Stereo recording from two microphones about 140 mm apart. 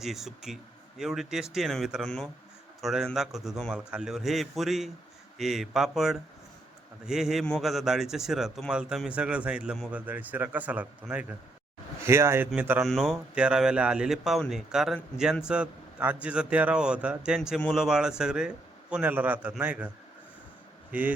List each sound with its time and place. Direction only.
0.0 s a man's voice: centre (ahead or behind)
12.8 s a man's voice: centre (ahead or behind)